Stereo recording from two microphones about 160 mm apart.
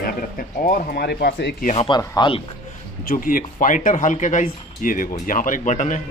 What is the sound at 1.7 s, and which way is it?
Speech, 35° left (ahead or behind).